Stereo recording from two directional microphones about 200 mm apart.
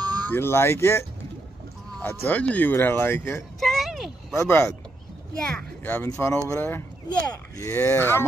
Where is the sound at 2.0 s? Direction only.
10° left (ahead or behind).